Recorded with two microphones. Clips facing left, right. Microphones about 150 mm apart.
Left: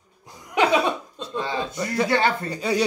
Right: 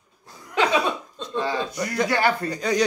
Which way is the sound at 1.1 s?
15° left (ahead or behind).